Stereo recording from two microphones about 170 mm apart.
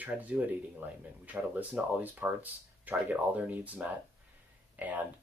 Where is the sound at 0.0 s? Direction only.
10° right (ahead or behind).